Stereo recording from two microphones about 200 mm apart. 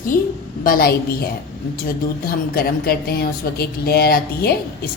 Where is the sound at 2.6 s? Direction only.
50° left (ahead or behind).